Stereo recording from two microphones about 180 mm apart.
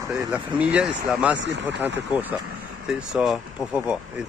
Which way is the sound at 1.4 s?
85° right.